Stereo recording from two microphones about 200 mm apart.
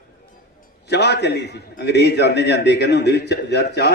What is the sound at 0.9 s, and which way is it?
A man's voice, 55° left (ahead or behind).